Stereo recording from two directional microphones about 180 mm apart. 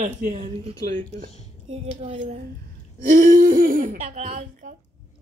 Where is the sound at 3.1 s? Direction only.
45° right (ahead or behind).